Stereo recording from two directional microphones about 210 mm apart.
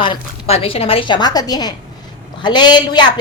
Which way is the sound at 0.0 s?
25° left (ahead or behind).